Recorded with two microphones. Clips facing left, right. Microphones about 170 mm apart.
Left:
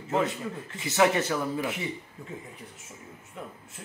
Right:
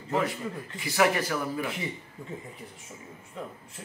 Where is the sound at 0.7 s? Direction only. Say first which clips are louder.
Left 1 dB; 20° left (ahead or behind).